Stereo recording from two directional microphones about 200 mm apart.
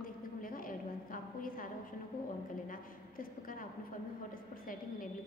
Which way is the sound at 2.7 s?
45° left (ahead or behind).